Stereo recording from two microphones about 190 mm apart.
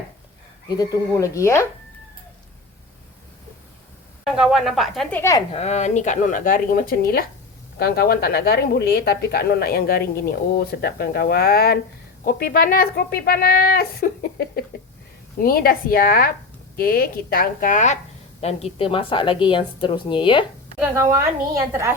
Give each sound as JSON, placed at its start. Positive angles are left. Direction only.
{"t": 0.7, "sound": "speech", "side_deg": 20}
{"t": 4.4, "sound": "speech", "side_deg": -5}
{"t": 5.5, "sound": "a woman's voice", "side_deg": 35}
{"t": 20.9, "sound": "a woman's voice", "side_deg": -15}